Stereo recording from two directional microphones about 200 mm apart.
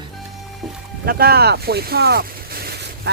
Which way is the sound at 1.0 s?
50° right (ahead or behind).